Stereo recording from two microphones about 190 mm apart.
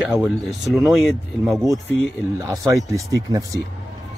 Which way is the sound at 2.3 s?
15° right (ahead or behind).